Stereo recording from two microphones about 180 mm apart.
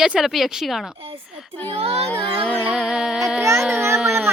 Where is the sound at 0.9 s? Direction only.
30° right (ahead or behind).